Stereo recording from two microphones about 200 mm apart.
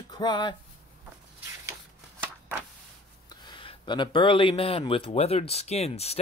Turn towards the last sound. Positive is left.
turn(degrees=30)  # may be behind; listen again after turning